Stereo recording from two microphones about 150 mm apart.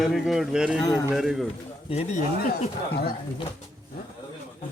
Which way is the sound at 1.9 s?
40° left (ahead or behind).